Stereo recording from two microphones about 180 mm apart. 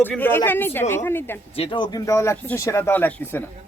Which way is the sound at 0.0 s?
10° left (ahead or behind).